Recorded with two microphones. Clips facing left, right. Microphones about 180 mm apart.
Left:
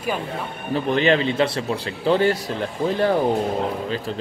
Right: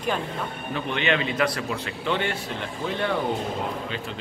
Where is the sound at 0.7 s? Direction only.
35° left (ahead or behind).